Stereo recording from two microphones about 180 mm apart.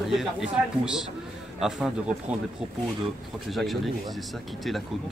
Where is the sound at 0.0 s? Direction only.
Centre (ahead or behind).